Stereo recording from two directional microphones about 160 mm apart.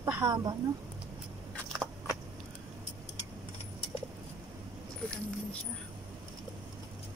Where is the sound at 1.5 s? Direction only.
Centre (ahead or behind).